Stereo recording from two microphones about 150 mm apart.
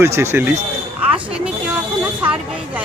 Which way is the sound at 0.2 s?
15° right (ahead or behind).